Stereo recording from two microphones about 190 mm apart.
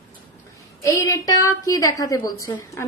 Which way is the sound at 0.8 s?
15° left (ahead or behind).